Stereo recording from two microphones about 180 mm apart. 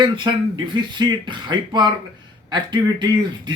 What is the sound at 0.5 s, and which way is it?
Speech, 25° right (ahead or behind).